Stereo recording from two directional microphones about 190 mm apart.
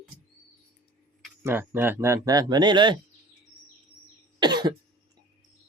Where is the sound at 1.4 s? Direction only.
10° right (ahead or behind).